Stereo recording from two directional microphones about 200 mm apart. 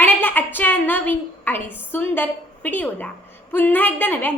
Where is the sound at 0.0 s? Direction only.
10° left (ahead or behind).